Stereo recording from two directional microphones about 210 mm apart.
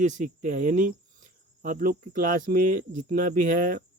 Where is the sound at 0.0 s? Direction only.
35° right (ahead or behind).